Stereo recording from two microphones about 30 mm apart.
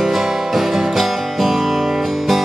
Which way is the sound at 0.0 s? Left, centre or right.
Centre.